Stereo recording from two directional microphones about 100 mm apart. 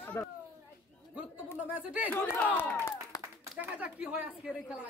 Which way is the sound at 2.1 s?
20° left (ahead or behind).